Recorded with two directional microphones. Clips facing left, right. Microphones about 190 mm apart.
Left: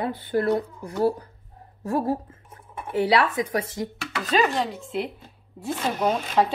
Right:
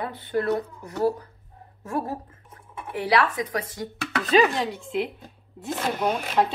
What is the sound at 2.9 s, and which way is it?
Speech, 25° left (ahead or behind).